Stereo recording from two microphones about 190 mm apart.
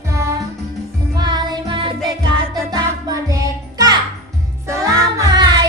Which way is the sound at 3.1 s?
20° right (ahead or behind).